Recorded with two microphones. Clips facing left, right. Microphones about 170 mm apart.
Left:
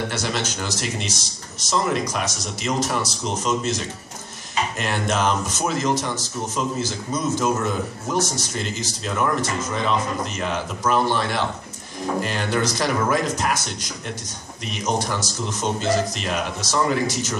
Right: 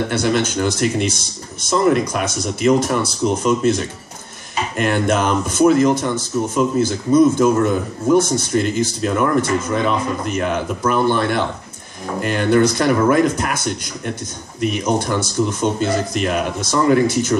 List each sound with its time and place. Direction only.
0.1 s speech: 55° right (ahead or behind)